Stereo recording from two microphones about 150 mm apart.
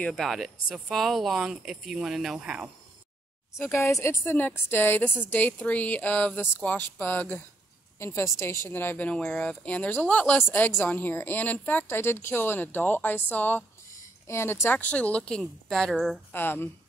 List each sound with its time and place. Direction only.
0.0 s speech: centre (ahead or behind)
3.5 s a woman's voice: 15° left (ahead or behind); by 16.2 s centre (ahead or behind)
16.3 s a woman's voice: 15° left (ahead or behind)